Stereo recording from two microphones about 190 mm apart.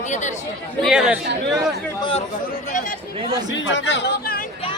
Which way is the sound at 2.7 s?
45° left (ahead or behind).